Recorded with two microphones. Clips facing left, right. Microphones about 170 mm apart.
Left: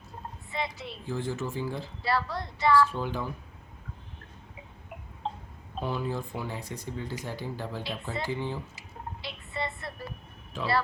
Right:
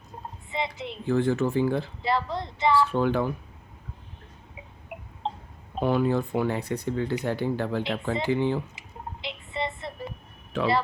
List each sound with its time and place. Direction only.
0.5 s a woman's voice: 20° right (ahead or behind)
1.0 s speech: 60° right (ahead or behind)
2.0 s speech: 20° right (ahead or behind)
2.9 s speech: 65° right (ahead or behind)
5.8 s speech: 65° right (ahead or behind)
9.2 s a sound: 20° right (ahead or behind)
10.5 s speech: 65° right (ahead or behind)